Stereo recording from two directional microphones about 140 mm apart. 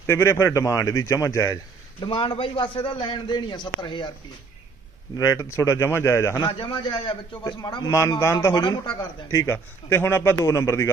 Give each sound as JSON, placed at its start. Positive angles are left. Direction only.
{"t": 0.0, "sound": "speech", "side_deg": 15}
{"t": 2.0, "sound": "a man's voice", "side_deg": 40}
{"t": 5.1, "sound": "speech", "side_deg": 25}
{"t": 6.5, "sound": "a man's voice", "side_deg": 35}